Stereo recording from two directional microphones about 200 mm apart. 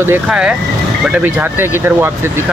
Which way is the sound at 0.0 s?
10° right (ahead or behind).